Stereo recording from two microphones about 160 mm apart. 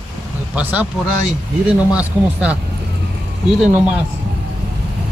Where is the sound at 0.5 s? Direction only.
10° right (ahead or behind).